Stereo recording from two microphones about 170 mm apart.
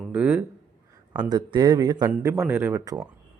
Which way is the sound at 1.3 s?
25° right (ahead or behind).